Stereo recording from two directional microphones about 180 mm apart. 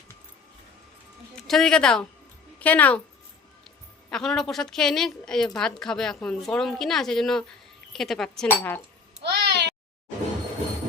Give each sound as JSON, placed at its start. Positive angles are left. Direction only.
{"t": 1.5, "sound": "a woman's voice", "side_deg": 0}
{"t": 4.1, "sound": "a woman's voice", "side_deg": 0}
{"t": 9.2, "sound": "babbling", "side_deg": -70}